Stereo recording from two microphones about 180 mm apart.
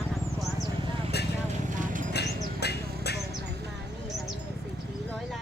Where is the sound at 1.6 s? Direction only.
45° right (ahead or behind).